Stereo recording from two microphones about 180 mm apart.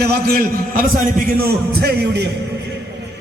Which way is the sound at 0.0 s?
60° right (ahead or behind).